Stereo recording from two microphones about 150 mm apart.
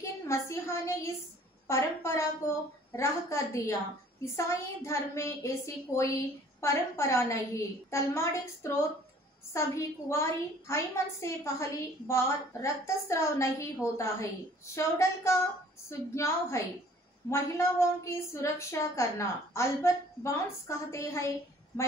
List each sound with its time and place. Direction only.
0.0 s a woman's voice: 20° left (ahead or behind)